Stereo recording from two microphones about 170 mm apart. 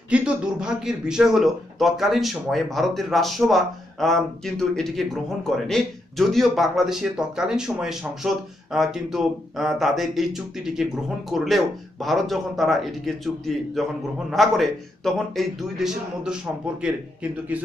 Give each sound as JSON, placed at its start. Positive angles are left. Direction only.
{"t": 0.1, "sound": "a man's voice", "side_deg": -5}